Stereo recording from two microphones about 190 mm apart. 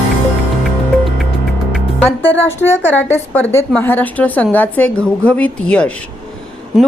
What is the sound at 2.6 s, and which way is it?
A woman's voice, 10° left (ahead or behind).